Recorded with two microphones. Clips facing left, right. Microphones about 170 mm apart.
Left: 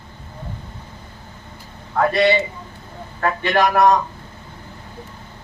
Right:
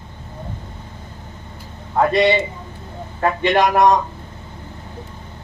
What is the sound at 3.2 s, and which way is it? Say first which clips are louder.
Speech: right 2 dB; 20° right (ahead or behind).